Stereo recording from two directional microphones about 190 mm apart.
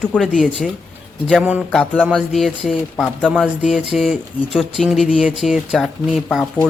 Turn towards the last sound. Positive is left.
turn(degrees=0)  # may be behind; listen again after turning